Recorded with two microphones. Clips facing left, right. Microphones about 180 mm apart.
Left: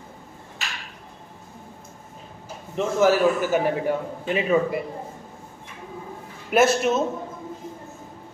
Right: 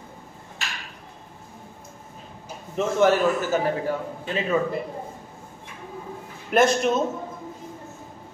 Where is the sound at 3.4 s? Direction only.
15° left (ahead or behind).